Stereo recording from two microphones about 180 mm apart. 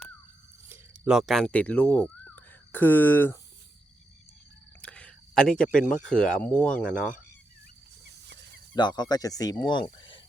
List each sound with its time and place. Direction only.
0.7 s speech: 5° right (ahead or behind); by 3.3 s 10° left (ahead or behind)
4.8 s speech: 5° left (ahead or behind)
8.7 s speech: 25° left (ahead or behind)
10.0 s a sound: 25° left (ahead or behind)